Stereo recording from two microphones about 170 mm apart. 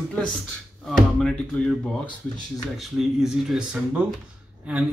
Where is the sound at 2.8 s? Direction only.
Centre (ahead or behind).